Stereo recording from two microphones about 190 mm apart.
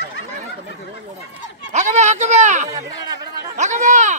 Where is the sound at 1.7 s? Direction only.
40° right (ahead or behind).